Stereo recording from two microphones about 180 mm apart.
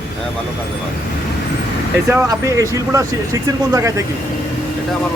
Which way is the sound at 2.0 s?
15° right (ahead or behind).